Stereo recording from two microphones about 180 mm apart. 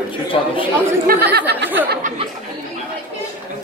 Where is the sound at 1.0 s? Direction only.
60° right (ahead or behind).